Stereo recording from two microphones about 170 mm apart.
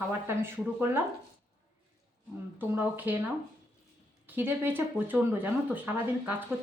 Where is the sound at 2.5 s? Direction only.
10° right (ahead or behind).